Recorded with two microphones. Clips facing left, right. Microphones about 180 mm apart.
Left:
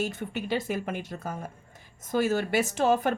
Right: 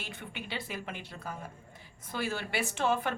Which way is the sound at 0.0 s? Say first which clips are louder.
Left 11 dB; 40° left (ahead or behind).